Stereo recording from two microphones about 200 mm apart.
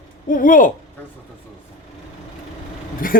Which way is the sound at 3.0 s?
45° left (ahead or behind).